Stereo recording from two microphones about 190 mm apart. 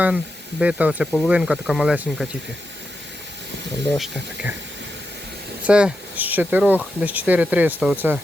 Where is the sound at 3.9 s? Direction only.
Centre (ahead or behind).